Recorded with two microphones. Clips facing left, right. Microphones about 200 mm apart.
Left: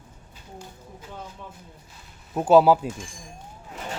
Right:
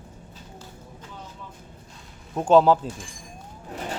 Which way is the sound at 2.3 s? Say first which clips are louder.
Left 1 dB; 5° left (ahead or behind).